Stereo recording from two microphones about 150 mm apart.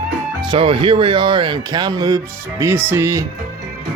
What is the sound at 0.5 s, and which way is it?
Speech, 35° right (ahead or behind).